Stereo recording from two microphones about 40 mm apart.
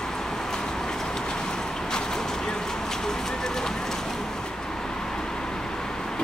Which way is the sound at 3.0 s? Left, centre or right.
Centre.